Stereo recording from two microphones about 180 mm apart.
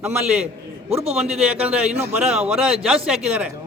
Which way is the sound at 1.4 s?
5° right (ahead or behind).